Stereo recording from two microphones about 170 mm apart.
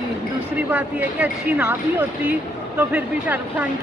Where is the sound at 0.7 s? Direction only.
10° right (ahead or behind).